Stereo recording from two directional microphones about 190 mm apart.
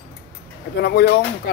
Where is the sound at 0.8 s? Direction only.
55° left (ahead or behind).